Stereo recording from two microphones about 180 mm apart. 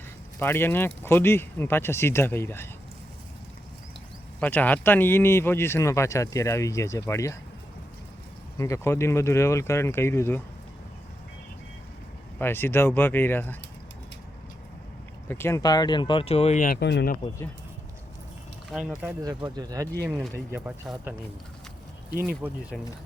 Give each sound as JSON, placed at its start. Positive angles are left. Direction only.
{"t": 0.3, "sound": "speech", "side_deg": 10}
{"t": 4.4, "sound": "speech", "side_deg": 10}
{"t": 8.5, "sound": "speech", "side_deg": 15}
{"t": 12.4, "sound": "speech", "side_deg": 10}
{"t": 15.3, "sound": "speech", "side_deg": 15}
{"t": 16.6, "sound": "speech", "side_deg": 70}
{"t": 18.7, "sound": "speech", "side_deg": -5}
{"t": 19.2, "sound": "speech", "side_deg": -20}
{"t": 22.2, "sound": "speech", "side_deg": -10}